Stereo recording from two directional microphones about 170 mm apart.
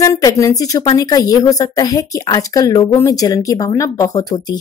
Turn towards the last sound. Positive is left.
turn(degrees=25)  # may be behind; listen again after turning